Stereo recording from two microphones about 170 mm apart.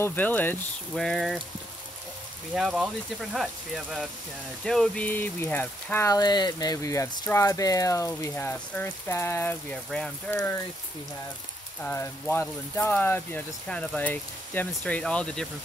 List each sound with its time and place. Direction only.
0.0 s speech: 10° left (ahead or behind)
2.5 s speech: 5° right (ahead or behind)
11.8 s speech: 15° left (ahead or behind)